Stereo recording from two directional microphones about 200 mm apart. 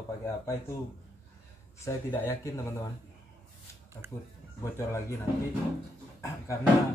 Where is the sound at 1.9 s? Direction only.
15° left (ahead or behind).